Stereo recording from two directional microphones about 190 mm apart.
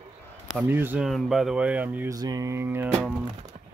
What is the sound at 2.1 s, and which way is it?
Speech, 20° right (ahead or behind).